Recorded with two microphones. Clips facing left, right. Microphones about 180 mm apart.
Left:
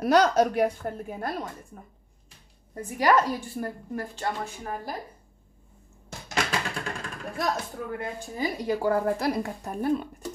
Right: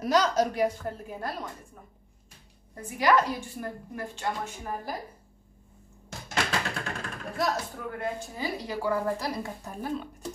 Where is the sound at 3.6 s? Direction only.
45° left (ahead or behind).